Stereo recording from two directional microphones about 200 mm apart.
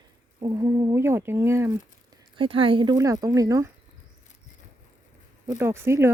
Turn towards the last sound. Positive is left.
turn(degrees=-10)  # may be behind; listen again after turning